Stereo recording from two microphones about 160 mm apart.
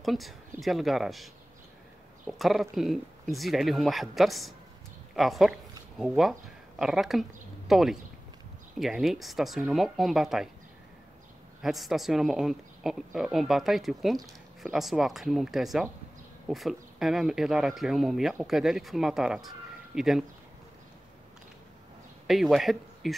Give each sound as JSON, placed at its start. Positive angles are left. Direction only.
{"t": 0.0, "sound": "a woman's voice", "side_deg": 0}
{"t": 2.3, "sound": "a woman's voice", "side_deg": 0}
{"t": 11.6, "sound": "a woman's voice", "side_deg": 0}
{"t": 22.3, "sound": "speech", "side_deg": 0}